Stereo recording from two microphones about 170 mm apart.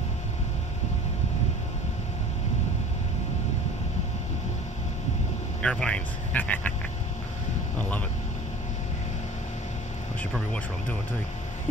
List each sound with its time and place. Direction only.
5.6 s speech: 5° left (ahead or behind)
10.3 s speech: 5° left (ahead or behind)